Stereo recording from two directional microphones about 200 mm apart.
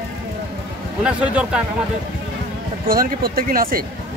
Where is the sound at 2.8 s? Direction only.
45° right (ahead or behind).